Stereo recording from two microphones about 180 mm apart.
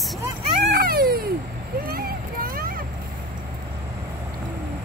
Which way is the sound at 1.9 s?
55° right (ahead or behind).